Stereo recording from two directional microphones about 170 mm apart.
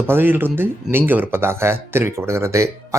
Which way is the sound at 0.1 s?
10° right (ahead or behind).